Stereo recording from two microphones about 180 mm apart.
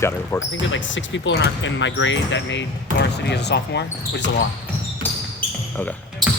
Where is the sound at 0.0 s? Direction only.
15° left (ahead or behind).